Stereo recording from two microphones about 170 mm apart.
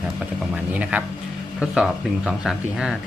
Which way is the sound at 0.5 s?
5° right (ahead or behind).